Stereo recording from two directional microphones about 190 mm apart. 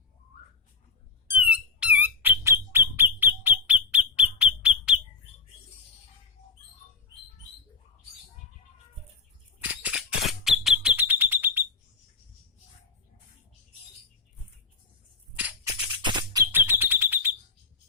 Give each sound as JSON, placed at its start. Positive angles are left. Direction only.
{"t": 1.3, "sound": "bird", "side_deg": -10}
{"t": 9.6, "sound": "alarm", "side_deg": -10}
{"t": 16.0, "sound": "music", "side_deg": -25}
{"t": 16.5, "sound": "alarm", "side_deg": -10}